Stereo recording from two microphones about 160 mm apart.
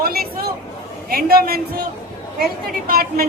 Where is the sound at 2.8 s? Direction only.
70° right (ahead or behind).